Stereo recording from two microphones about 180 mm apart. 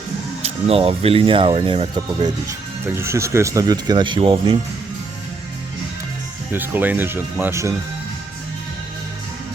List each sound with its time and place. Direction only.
0.4 s speech: 35° right (ahead or behind)
2.5 s speech: 15° right (ahead or behind)
6.5 s speech: 10° right (ahead or behind)